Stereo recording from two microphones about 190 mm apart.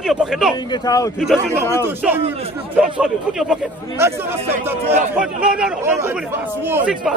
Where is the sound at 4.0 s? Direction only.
15° right (ahead or behind).